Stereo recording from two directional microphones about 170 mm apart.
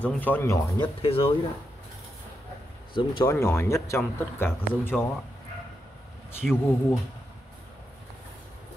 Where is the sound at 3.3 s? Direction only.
15° left (ahead or behind).